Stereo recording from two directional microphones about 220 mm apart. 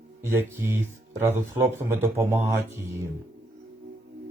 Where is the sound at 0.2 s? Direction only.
10° right (ahead or behind).